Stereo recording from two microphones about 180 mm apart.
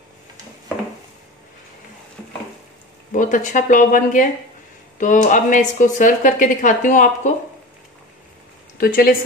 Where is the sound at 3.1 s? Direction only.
45° left (ahead or behind).